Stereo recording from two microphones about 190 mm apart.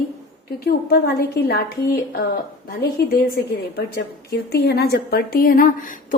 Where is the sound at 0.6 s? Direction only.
55° left (ahead or behind).